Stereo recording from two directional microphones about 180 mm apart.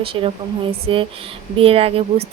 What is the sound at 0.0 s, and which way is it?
A woman's voice, 30° right (ahead or behind).